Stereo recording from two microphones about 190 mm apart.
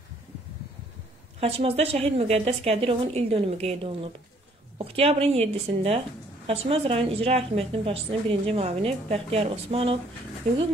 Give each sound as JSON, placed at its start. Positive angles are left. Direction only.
{"t": 1.4, "sound": "a woman's voice", "side_deg": -30}